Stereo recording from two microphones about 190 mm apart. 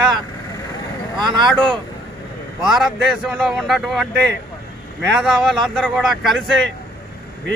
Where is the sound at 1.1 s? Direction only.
25° right (ahead or behind).